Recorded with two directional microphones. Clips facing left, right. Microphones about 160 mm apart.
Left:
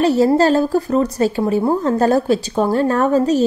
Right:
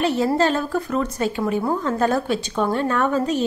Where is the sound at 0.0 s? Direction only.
40° left (ahead or behind).